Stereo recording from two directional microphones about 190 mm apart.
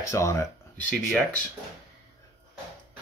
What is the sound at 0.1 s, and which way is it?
Speech, 15° left (ahead or behind).